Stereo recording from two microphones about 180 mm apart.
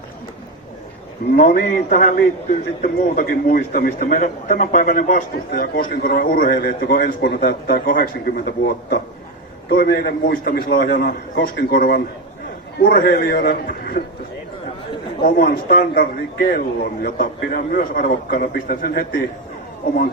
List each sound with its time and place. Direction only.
1.4 s a man's voice: 50° left (ahead or behind)
15.2 s a man's voice: 55° left (ahead or behind)